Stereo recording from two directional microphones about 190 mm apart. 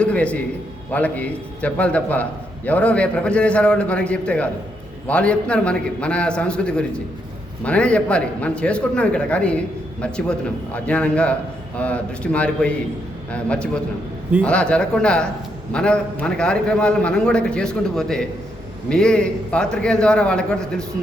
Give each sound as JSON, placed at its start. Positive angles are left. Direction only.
{"t": 0.0, "sound": "a man's voice", "side_deg": 5}